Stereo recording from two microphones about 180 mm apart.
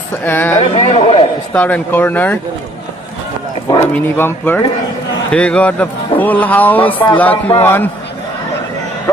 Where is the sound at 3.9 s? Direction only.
10° left (ahead or behind).